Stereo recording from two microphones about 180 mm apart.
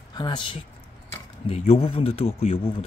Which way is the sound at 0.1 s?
25° left (ahead or behind).